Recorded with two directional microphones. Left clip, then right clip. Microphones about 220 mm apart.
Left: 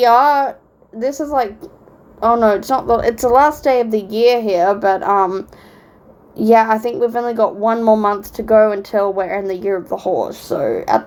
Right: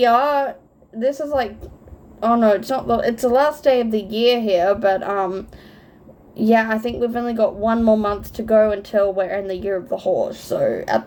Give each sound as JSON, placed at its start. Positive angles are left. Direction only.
{"t": 0.0, "sound": "a woman's voice", "side_deg": 30}